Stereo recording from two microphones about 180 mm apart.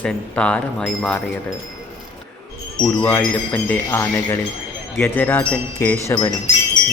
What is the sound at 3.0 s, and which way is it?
Speech, 10° left (ahead or behind).